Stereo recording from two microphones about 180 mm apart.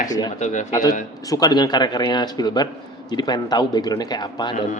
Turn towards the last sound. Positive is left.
turn(degrees=25)  # may be behind; listen again after turning